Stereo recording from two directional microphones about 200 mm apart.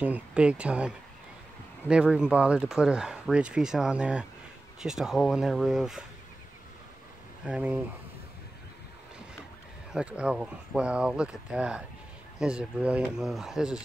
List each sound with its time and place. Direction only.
0.0 s speech: 5° right (ahead or behind)
7.4 s speech: 5° right (ahead or behind)
9.9 s speech: 5° right (ahead or behind)